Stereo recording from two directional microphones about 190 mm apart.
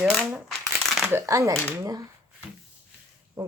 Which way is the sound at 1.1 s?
15° right (ahead or behind).